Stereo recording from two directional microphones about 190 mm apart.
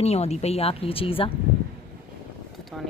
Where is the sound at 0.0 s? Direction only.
35° left (ahead or behind).